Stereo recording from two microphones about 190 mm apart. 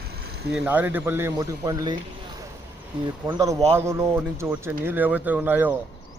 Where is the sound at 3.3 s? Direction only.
15° right (ahead or behind).